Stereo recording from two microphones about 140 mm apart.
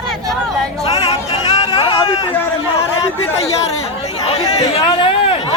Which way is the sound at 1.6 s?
35° left (ahead or behind).